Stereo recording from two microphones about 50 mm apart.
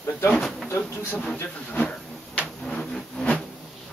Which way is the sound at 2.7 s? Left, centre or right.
Centre.